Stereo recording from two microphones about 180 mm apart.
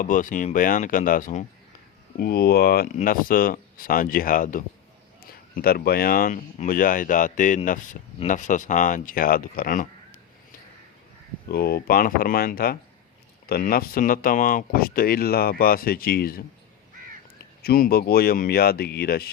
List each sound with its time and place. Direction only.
0.0 s speech: 45° left (ahead or behind)
2.1 s speech: 60° left (ahead or behind)
11.4 s speech: 60° left (ahead or behind)